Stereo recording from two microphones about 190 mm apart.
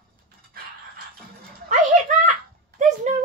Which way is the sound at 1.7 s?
40° right (ahead or behind).